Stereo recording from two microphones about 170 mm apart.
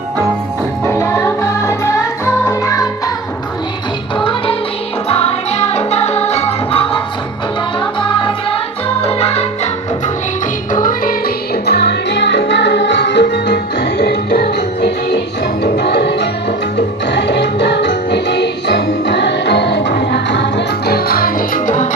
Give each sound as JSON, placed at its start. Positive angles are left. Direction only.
{"t": 0.9, "sound": "music", "side_deg": 15}
{"t": 4.2, "sound": "music", "side_deg": 30}
{"t": 10.7, "sound": "music", "side_deg": 50}
{"t": 11.6, "sound": "music", "side_deg": 70}